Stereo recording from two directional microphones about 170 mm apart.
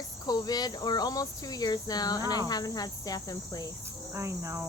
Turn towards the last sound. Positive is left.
turn(degrees=-15)  # may be behind; listen again after turning